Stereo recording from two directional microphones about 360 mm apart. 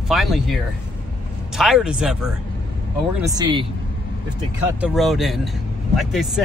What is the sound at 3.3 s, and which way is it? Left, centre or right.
Speech, centre.